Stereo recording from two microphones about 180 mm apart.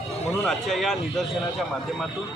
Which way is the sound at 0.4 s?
Centre (ahead or behind).